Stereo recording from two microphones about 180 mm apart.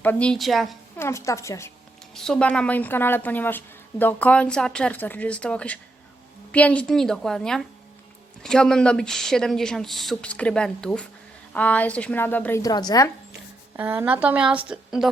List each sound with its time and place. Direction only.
0.0 s speech: 10° left (ahead or behind)
0.9 s a woman's voice: 15° left (ahead or behind)
2.1 s a woman's voice: 5° left (ahead or behind); by 13.1 s 20° left (ahead or behind)
13.7 s a woman's voice: 10° right (ahead or behind)